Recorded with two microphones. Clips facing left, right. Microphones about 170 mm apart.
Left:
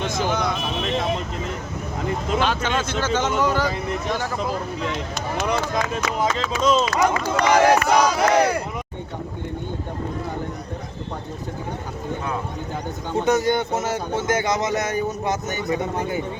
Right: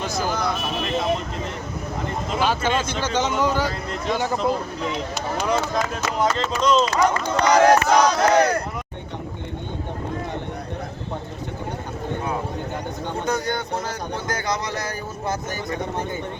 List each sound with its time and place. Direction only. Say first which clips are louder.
0.0 s a sound: left 1 dB; 5° right (ahead or behind)
2.4 s speech: right 1 dB; 10° right (ahead or behind)
3.7 s battle cry: left 2 dB; 15° left (ahead or behind)
4.1 s speech: right 6 dB; 15° right (ahead or behind)
4.9 s speech: right 1 dB; centre (ahead or behind)
7.4 s battle cry: right 1 dB; 5° left (ahead or behind)
13.2 s a man's voice: left 6 dB; 25° left (ahead or behind)